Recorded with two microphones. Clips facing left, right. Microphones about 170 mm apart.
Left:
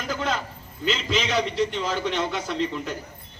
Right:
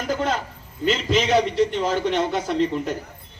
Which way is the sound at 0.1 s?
50° right (ahead or behind).